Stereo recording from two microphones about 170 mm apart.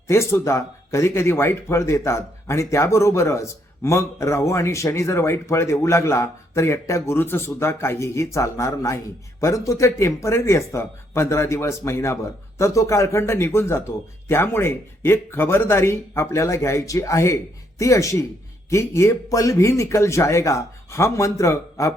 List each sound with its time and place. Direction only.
0.1 s speech: 15° left (ahead or behind)